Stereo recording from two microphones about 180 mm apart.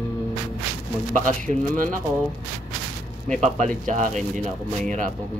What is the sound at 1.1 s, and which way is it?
Speech, 45° right (ahead or behind).